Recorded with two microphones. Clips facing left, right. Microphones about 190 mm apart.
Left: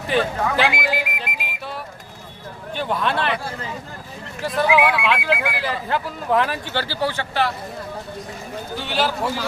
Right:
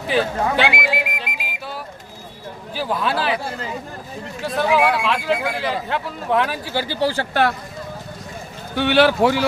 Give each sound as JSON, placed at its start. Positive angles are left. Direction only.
{"t": 0.1, "sound": "speech", "side_deg": 0}
{"t": 2.7, "sound": "speech", "side_deg": -5}
{"t": 8.7, "sound": "speech", "side_deg": -65}